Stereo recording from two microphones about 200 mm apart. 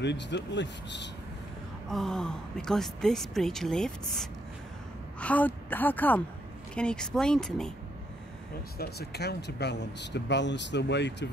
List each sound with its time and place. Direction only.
0.0 s speech: 60° left (ahead or behind)
1.9 s a woman's voice: centre (ahead or behind)
8.7 s speech: 55° left (ahead or behind)